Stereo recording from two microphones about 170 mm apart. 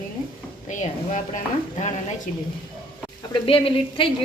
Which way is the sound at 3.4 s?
30° left (ahead or behind).